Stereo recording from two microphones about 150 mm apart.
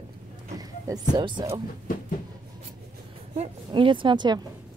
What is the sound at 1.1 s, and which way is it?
Speech, 30° right (ahead or behind).